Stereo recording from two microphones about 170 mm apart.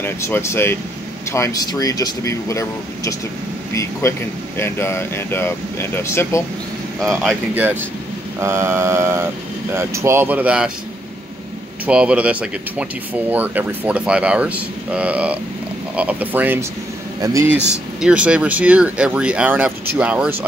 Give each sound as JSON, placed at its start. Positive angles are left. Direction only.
{"t": 0.0, "sound": "speech", "side_deg": 15}
{"t": 7.0, "sound": "speech", "side_deg": 0}
{"t": 7.5, "sound": "speech", "side_deg": -10}
{"t": 11.8, "sound": "speech", "side_deg": -5}
{"t": 18.0, "sound": "speech", "side_deg": -5}